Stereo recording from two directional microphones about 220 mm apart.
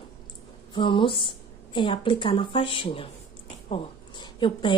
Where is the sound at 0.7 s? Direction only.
20° left (ahead or behind).